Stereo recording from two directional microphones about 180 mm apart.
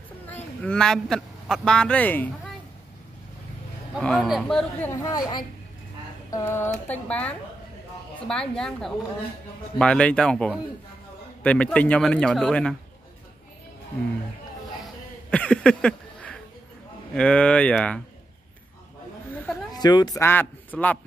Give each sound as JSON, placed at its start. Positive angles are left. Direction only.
{"t": 0.3, "sound": "speech", "side_deg": 10}
{"t": 4.0, "sound": "speech", "side_deg": 5}
{"t": 4.9, "sound": "a woman's voice", "side_deg": 20}
{"t": 15.3, "sound": "a sound", "side_deg": 5}
{"t": 17.1, "sound": "speech", "side_deg": 5}
{"t": 19.3, "sound": "a sound", "side_deg": 5}
{"t": 19.7, "sound": "a man's voice", "side_deg": 20}